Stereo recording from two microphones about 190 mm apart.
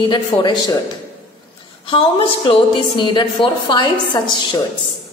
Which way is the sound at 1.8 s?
30° left (ahead or behind).